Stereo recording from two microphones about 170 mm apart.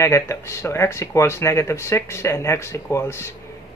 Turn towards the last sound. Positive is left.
turn(degrees=15)  # may be behind; listen again after turning